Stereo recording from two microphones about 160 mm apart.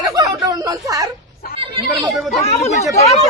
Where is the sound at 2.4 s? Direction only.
45° left (ahead or behind).